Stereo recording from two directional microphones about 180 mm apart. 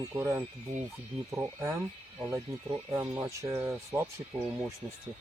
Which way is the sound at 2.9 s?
15° right (ahead or behind).